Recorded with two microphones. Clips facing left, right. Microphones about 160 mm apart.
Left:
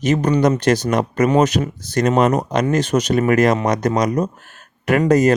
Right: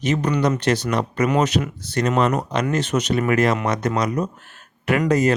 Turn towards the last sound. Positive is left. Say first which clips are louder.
# left 4 dB
turn(degrees=40)  # may be behind; listen again after turning